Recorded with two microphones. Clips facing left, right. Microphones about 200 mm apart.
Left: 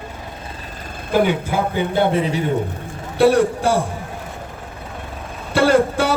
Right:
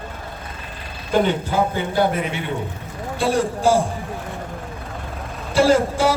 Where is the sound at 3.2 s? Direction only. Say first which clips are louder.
Left 6 dB; 65° left (ahead or behind).